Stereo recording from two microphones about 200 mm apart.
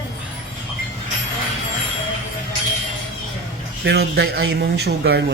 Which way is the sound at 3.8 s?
55° right (ahead or behind).